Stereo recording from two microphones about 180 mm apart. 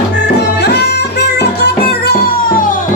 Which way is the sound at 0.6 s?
65° left (ahead or behind).